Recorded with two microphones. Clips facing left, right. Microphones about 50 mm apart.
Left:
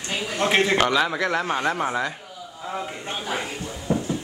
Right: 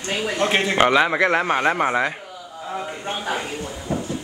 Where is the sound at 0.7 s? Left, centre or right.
Right.